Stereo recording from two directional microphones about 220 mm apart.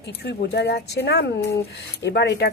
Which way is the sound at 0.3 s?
50° left (ahead or behind).